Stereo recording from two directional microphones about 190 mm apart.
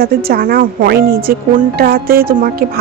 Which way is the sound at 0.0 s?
50° right (ahead or behind).